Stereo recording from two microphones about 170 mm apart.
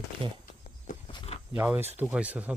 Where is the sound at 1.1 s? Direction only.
30° left (ahead or behind).